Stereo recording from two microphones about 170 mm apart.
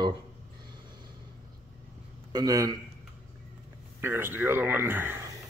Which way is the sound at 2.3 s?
20° right (ahead or behind).